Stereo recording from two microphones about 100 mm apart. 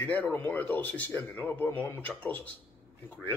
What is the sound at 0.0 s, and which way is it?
Speech, 15° left (ahead or behind).